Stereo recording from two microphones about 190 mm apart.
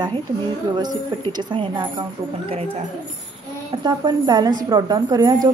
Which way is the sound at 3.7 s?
20° right (ahead or behind).